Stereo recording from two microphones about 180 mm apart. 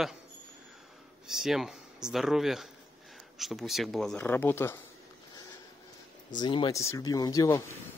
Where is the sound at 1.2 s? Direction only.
Centre (ahead or behind).